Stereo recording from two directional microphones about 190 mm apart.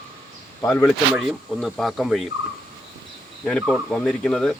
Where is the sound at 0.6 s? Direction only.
10° left (ahead or behind).